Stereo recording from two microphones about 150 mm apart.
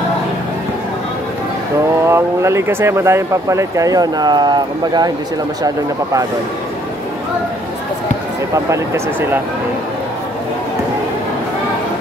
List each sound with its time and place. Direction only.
2.0 s speech: 20° right (ahead or behind)
8.6 s speech: 20° right (ahead or behind)